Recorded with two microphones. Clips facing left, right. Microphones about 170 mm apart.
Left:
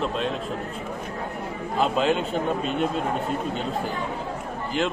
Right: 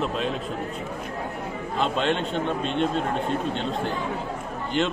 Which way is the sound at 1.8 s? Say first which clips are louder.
Left 2 dB; 5° left (ahead or behind).